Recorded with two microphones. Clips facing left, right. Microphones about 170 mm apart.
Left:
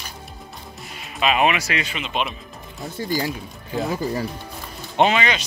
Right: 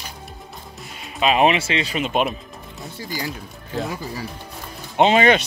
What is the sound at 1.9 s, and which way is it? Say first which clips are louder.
Speech: right 5 dB; 45° right (ahead or behind).